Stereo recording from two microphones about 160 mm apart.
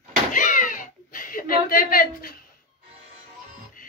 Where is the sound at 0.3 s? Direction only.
55° left (ahead or behind).